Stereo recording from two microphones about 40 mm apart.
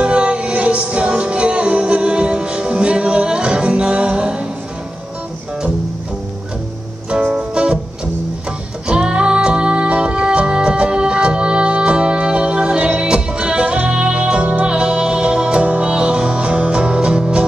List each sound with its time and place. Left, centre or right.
0.0 s music: right
7.3 s music: right
8.8 s music: right
15.6 s music: right
15.9 s music: right